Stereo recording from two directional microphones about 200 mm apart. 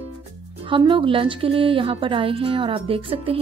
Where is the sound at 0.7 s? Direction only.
25° right (ahead or behind).